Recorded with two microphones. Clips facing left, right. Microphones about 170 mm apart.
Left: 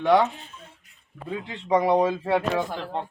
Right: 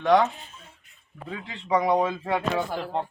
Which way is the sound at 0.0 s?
5° left (ahead or behind).